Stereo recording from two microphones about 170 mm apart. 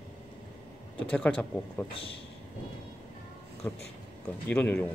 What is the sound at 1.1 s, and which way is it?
Speech, 5° left (ahead or behind).